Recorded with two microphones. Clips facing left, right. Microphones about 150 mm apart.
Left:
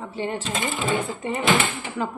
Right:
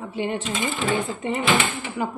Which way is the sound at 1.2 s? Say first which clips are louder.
Left 1 dB; 20° right (ahead or behind).